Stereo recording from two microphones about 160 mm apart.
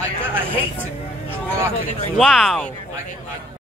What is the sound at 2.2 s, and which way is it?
Speech, centre (ahead or behind).